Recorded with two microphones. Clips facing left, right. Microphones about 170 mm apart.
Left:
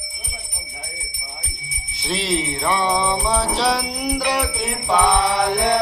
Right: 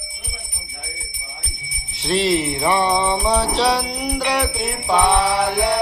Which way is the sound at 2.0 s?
Centre (ahead or behind).